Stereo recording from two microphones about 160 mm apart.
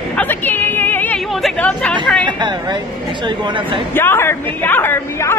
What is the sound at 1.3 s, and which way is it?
Chatter, 5° left (ahead or behind).